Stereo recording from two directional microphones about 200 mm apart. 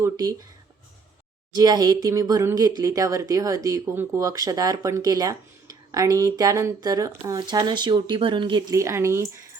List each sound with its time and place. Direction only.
0.0 s speech: 20° right (ahead or behind)
1.5 s speech: 20° right (ahead or behind)